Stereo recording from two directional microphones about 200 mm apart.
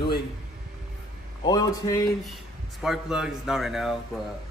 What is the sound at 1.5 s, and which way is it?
Speech, 20° left (ahead or behind).